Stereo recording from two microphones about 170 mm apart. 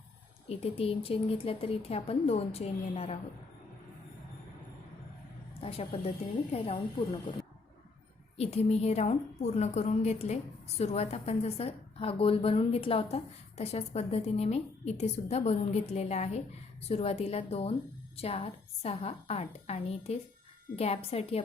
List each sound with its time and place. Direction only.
0.4 s a woman's voice: 35° left (ahead or behind)
5.5 s a woman's voice: 35° left (ahead or behind)
8.4 s a woman's voice: 40° left (ahead or behind)